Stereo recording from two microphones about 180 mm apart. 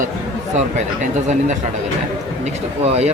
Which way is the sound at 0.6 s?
40° right (ahead or behind).